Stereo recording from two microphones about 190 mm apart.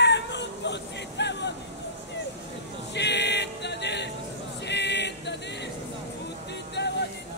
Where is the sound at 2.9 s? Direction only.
65° left (ahead or behind).